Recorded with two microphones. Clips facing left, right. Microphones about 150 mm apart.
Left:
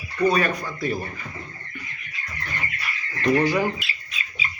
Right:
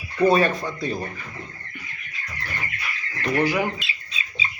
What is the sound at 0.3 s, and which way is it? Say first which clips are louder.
Speech: right 3 dB; 25° right (ahead or behind).